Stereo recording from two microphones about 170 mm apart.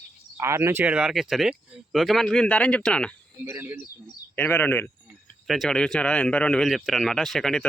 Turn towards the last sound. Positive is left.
turn(degrees=5)  # may be behind; listen again after turning